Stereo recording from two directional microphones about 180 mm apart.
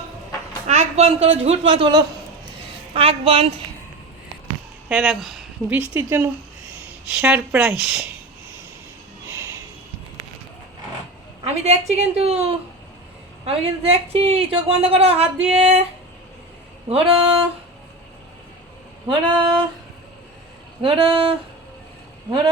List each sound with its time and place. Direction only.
0.7 s a sound: 35° right (ahead or behind)
1.4 s a woman's voice: 35° right (ahead or behind)
4.9 s speech: 5° right (ahead or behind)
11.4 s a woman's voice: 40° right (ahead or behind)
16.9 s a woman's voice: 30° right (ahead or behind)
19.0 s a sound: 30° right (ahead or behind)
20.8 s a woman's voice: 30° right (ahead or behind)